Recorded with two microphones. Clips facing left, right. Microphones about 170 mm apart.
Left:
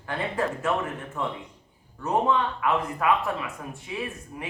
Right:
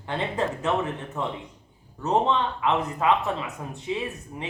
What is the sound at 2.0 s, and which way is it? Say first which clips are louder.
Speech: right 1 dB; 25° right (ahead or behind).